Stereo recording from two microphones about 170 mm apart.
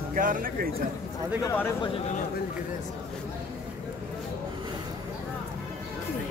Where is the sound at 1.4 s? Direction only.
10° left (ahead or behind).